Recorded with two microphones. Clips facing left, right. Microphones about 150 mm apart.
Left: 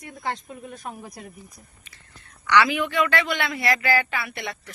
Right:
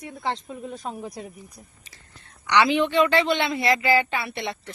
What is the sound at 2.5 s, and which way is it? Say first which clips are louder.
A woman's voice: right 1 dB; 25° right (ahead or behind).